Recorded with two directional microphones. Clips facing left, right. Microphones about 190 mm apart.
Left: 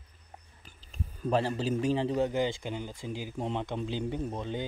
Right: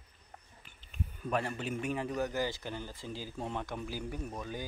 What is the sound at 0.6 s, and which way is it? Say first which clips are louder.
Speech: left 1 dB; 35° left (ahead or behind).